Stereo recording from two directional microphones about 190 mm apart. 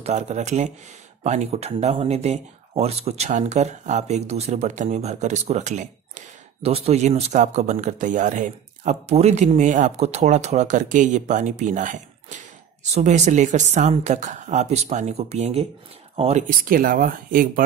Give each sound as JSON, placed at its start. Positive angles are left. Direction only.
{"t": 0.0, "sound": "speech", "side_deg": -35}
{"t": 16.4, "sound": "speech", "side_deg": -45}